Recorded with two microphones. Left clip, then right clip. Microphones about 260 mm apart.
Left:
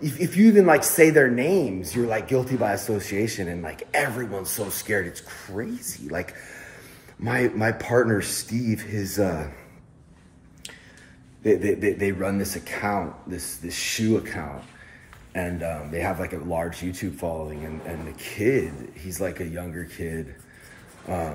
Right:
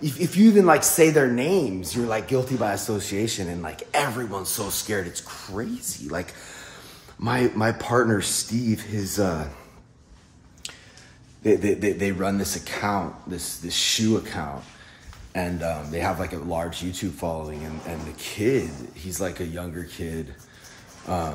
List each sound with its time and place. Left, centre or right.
0.0 s speech: centre
7.2 s speech: centre
11.4 s speech: centre